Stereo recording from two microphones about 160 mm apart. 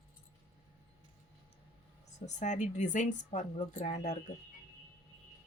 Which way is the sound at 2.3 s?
50° left (ahead or behind).